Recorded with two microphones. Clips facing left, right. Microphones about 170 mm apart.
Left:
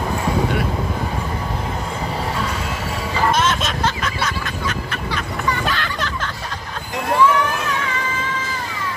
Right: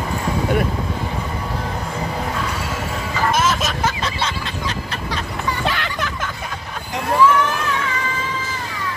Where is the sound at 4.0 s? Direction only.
30° right (ahead or behind).